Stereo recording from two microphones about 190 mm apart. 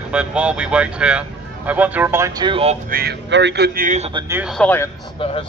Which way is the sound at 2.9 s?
55° right (ahead or behind).